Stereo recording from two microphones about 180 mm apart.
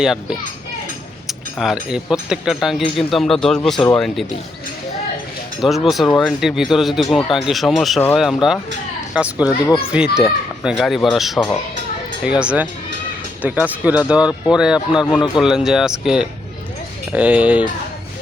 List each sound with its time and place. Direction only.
0.0 s speech: 5° right (ahead or behind)
5.6 s speech: centre (ahead or behind)
9.4 s speech: 20° left (ahead or behind)
9.9 s speech: 5° right (ahead or behind)